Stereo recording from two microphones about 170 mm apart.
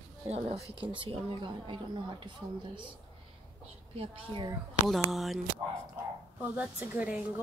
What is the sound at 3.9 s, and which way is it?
Speech, 30° right (ahead or behind).